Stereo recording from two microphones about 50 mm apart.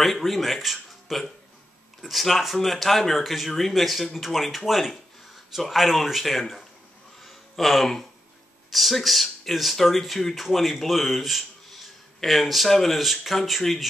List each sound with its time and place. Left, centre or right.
0.0 s speech: centre
7.2 s a sound: centre
8.6 s speech: centre